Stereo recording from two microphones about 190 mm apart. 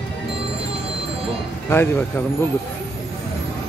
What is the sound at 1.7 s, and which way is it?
Speech, 10° left (ahead or behind).